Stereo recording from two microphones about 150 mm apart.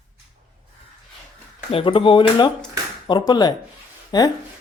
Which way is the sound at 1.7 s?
35° left (ahead or behind).